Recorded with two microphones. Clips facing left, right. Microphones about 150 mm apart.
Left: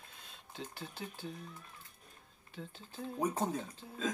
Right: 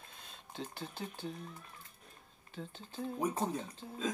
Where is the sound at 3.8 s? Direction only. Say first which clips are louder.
Right 3 dB; 25° right (ahead or behind).